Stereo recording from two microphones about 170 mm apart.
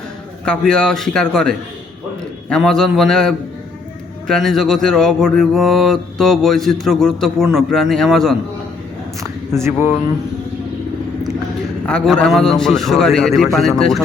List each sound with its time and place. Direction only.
0.4 s mantra: 5° left (ahead or behind)
9.5 s speech: 15° right (ahead or behind)
11.9 s mantra: 5° left (ahead or behind)